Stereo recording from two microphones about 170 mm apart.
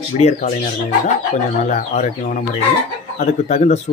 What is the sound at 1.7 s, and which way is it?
Speech, 45° left (ahead or behind).